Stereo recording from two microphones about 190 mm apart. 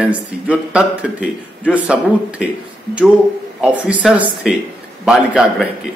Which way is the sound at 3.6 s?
5° right (ahead or behind).